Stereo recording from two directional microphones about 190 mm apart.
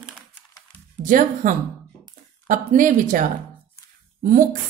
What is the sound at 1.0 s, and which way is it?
A woman's voice, 45° right (ahead or behind).